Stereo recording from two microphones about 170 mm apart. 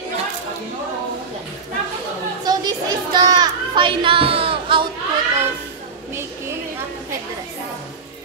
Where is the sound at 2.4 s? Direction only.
25° right (ahead or behind).